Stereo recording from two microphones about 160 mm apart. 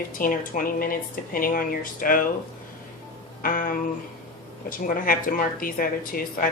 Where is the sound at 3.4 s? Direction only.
60° left (ahead or behind).